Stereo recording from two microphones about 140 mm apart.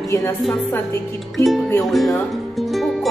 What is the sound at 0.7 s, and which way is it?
Speech, 20° left (ahead or behind).